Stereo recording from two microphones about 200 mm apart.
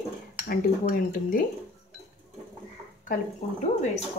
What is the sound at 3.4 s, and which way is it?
Speech, 35° left (ahead or behind).